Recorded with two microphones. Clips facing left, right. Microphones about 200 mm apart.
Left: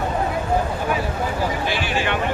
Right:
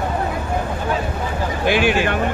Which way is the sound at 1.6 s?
55° right (ahead or behind).